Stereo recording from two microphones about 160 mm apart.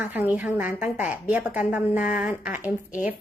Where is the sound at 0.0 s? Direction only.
10° right (ahead or behind).